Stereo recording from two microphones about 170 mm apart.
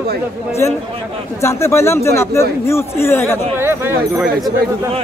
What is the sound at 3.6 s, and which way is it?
Speech, 15° right (ahead or behind).